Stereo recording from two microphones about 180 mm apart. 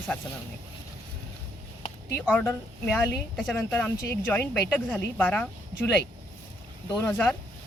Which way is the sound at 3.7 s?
10° left (ahead or behind).